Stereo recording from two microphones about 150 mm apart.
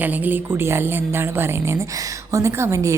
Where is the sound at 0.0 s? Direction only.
10° right (ahead or behind).